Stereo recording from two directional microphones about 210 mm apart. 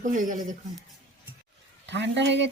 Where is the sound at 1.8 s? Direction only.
55° right (ahead or behind).